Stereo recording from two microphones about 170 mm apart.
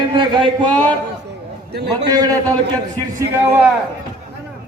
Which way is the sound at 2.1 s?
20° right (ahead or behind).